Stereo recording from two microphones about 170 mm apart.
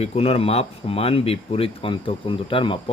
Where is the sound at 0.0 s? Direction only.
35° left (ahead or behind).